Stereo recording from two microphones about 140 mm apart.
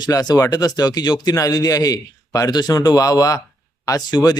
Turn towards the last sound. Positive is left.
turn(degrees=30)  # may be behind; listen again after turning